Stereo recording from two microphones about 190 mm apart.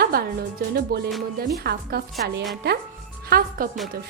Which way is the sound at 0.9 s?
55° right (ahead or behind).